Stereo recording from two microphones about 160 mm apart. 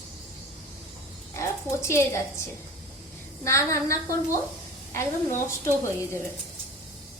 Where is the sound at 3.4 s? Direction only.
20° left (ahead or behind).